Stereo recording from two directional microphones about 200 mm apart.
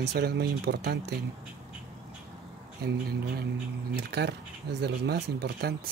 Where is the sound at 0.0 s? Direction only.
55° right (ahead or behind).